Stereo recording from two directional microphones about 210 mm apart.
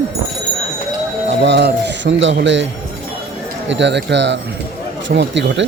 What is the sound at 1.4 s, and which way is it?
Speech, 55° right (ahead or behind).